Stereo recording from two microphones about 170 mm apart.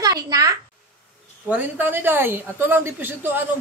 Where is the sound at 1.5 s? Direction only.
10° right (ahead or behind).